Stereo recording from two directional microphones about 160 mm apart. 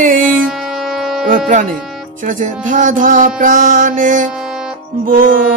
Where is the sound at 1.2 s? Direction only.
55° right (ahead or behind).